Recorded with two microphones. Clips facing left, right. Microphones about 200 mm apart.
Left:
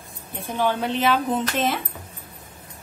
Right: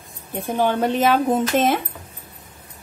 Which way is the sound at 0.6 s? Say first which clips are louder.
Right 4 dB; 45° right (ahead or behind).